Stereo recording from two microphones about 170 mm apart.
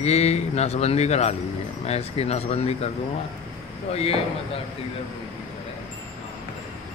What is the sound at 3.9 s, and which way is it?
Speech, 40° left (ahead or behind).